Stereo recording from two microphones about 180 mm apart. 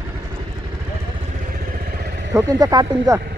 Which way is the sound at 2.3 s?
20° right (ahead or behind).